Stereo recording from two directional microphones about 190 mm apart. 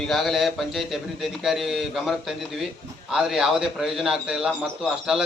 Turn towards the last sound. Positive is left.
turn(degrees=-5)  # may be behind; listen again after turning